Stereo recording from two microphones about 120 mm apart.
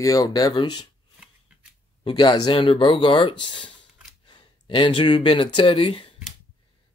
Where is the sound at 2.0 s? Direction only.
40° left (ahead or behind).